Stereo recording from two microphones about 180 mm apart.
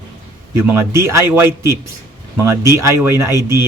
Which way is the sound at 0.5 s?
15° right (ahead or behind).